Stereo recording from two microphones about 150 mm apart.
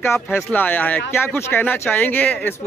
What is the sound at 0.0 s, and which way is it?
Speech, 15° left (ahead or behind).